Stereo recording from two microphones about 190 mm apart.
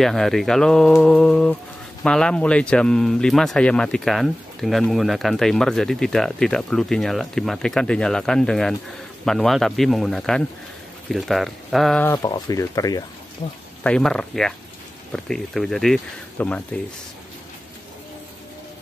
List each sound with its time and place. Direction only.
0.0 s speech: centre (ahead or behind); by 13.6 s 20° left (ahead or behind)
13.8 s speech: 5° left (ahead or behind)